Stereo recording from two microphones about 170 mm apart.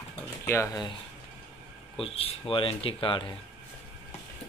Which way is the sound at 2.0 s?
35° left (ahead or behind).